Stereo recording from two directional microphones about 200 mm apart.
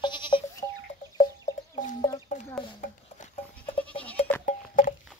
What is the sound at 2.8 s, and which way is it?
Goat, 40° left (ahead or behind).